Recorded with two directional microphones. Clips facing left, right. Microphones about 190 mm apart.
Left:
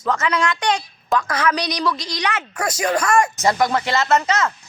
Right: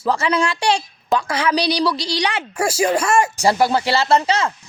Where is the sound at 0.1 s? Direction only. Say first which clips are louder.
Right 2 dB; 30° right (ahead or behind).